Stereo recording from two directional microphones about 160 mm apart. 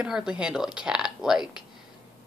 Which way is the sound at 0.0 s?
5° right (ahead or behind).